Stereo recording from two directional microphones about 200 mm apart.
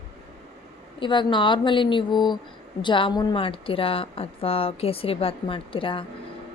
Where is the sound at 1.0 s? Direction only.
25° left (ahead or behind).